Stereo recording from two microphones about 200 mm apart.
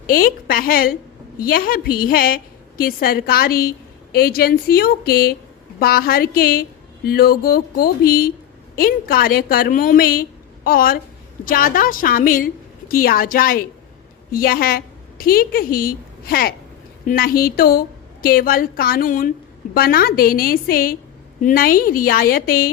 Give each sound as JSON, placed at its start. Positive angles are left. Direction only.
{"t": 0.1, "sound": "a woman's voice", "side_deg": 45}